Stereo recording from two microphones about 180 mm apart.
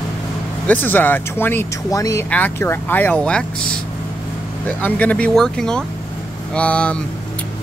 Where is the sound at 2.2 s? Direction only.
10° left (ahead or behind).